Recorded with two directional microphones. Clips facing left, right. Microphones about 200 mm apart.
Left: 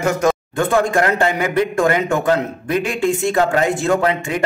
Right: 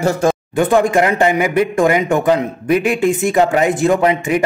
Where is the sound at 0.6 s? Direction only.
15° right (ahead or behind).